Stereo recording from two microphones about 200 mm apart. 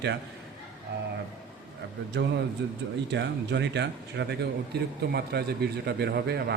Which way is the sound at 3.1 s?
60° right (ahead or behind).